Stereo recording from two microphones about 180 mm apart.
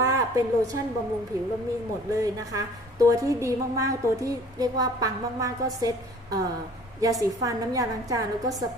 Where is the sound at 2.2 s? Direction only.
20° right (ahead or behind).